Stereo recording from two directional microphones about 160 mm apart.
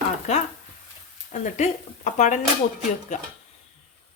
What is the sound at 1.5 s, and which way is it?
Speech, 50° left (ahead or behind).